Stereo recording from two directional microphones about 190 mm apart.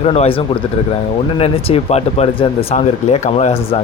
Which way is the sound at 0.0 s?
30° left (ahead or behind).